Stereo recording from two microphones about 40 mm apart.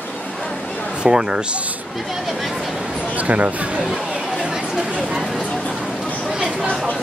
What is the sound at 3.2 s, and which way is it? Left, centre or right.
Speech, right.